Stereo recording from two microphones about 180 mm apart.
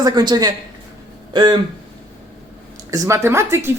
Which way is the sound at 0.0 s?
20° right (ahead or behind).